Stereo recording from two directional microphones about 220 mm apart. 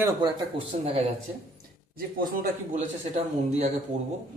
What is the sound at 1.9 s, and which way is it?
Speech, 40° right (ahead or behind).